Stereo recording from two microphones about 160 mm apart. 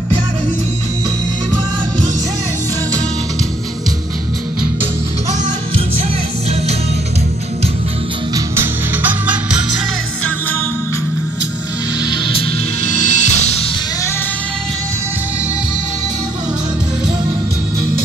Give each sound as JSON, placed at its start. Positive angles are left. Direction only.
{"t": 8.5, "sound": "music", "side_deg": -10}
{"t": 12.1, "sound": "music", "side_deg": 35}
{"t": 12.8, "sound": "music", "side_deg": 50}